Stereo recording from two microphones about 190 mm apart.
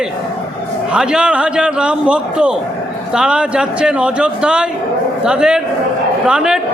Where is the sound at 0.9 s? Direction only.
5° right (ahead or behind).